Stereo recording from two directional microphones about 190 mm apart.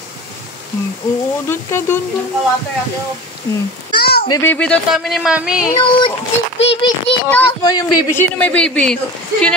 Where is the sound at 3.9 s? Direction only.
55° left (ahead or behind).